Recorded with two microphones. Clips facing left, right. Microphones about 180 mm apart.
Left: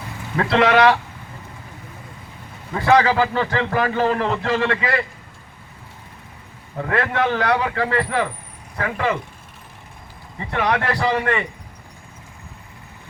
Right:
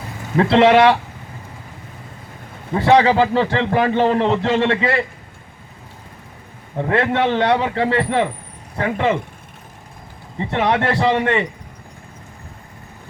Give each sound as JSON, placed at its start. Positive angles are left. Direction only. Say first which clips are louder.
{"t": 0.3, "sound": "a man's voice", "louder": "right 4 dB", "side_deg": -30}
{"t": 2.7, "sound": "a man's voice", "louder": "right 3 dB", "side_deg": -30}
{"t": 6.7, "sound": "a man's voice", "louder": "right 3 dB", "side_deg": -30}
{"t": 10.3, "sound": "a man's voice", "louder": "right 3 dB", "side_deg": -30}